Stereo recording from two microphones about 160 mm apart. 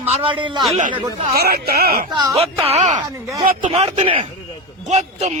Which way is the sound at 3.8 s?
35° right (ahead or behind).